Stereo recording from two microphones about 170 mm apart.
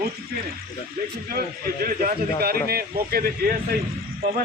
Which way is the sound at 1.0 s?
55° right (ahead or behind).